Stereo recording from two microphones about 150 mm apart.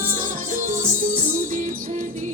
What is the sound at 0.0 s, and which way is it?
Music, 60° right (ahead or behind).